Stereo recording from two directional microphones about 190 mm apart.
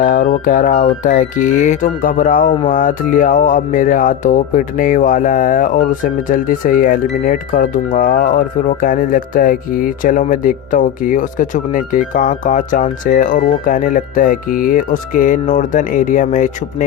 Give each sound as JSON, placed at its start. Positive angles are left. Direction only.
{"t": 0.0, "sound": "speech", "side_deg": 45}